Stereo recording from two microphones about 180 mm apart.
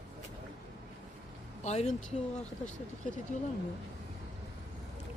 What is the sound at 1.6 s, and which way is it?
Speech, 40° left (ahead or behind).